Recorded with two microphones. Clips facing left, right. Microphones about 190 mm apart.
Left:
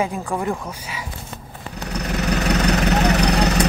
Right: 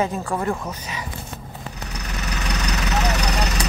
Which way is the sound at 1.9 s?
60° left (ahead or behind).